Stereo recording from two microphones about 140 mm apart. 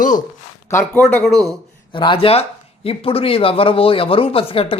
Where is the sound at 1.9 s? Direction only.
35° left (ahead or behind).